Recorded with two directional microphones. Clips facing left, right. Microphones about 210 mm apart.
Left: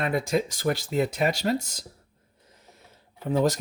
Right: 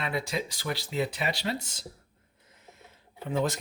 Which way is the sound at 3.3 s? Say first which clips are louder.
Left 5 dB; 40° left (ahead or behind).